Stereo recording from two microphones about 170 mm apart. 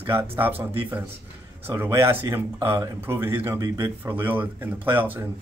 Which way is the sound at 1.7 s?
15° right (ahead or behind).